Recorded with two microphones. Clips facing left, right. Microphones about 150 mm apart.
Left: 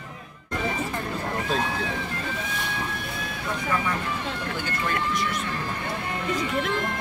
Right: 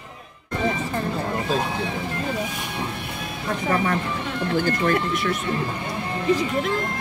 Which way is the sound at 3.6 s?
35° right (ahead or behind).